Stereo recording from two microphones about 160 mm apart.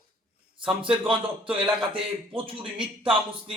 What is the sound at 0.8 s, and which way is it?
A man's voice, 35° right (ahead or behind).